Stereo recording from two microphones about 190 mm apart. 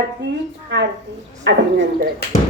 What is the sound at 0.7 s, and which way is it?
Speech, 70° right (ahead or behind).